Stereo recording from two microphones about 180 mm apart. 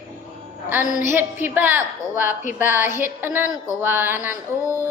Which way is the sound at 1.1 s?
10° right (ahead or behind).